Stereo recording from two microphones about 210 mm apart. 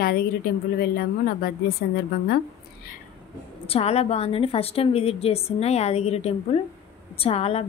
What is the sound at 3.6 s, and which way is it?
A woman's voice, 30° left (ahead or behind).